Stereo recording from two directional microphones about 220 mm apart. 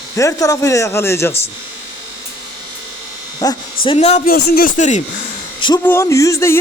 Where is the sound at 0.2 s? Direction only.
15° left (ahead or behind).